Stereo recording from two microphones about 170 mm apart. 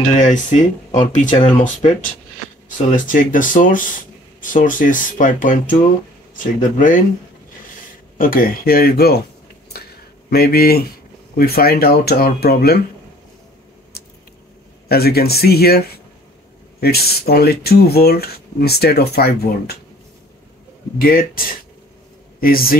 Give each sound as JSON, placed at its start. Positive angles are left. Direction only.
{"t": 0.1, "sound": "speech", "side_deg": 45}
{"t": 8.2, "sound": "speech", "side_deg": 55}
{"t": 9.7, "sound": "a sound", "side_deg": 65}
{"t": 10.3, "sound": "speech", "side_deg": 65}
{"t": 13.9, "sound": "a sound", "side_deg": 70}
{"t": 14.9, "sound": "speech", "side_deg": 65}
{"t": 21.0, "sound": "speech", "side_deg": 55}